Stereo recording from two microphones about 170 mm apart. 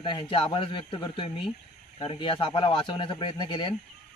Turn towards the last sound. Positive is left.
turn(degrees=25)  # may be behind; listen again after turning